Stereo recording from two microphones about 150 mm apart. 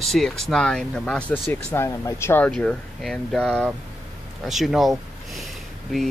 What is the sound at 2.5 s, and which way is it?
Speech, 5° left (ahead or behind).